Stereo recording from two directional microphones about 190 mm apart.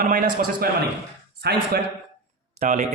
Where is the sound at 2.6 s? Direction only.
40° right (ahead or behind).